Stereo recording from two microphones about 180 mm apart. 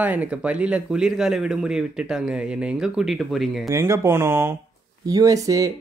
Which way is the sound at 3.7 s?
15° right (ahead or behind).